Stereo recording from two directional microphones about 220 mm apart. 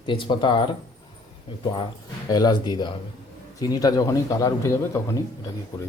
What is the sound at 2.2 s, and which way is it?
Speech, 20° left (ahead or behind).